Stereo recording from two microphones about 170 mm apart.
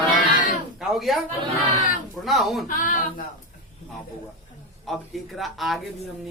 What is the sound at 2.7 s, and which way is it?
Speech, 50° left (ahead or behind).